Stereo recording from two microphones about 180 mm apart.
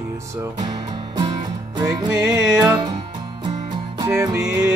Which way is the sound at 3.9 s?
15° right (ahead or behind).